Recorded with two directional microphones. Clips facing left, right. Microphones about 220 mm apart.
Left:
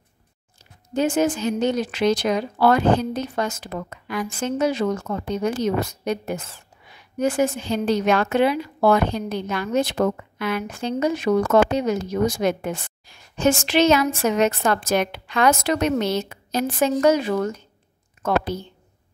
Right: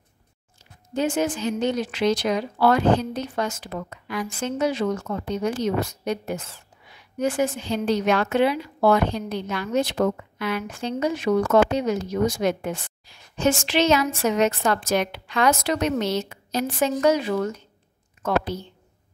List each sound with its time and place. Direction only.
0.9 s a woman's voice: 45° left (ahead or behind)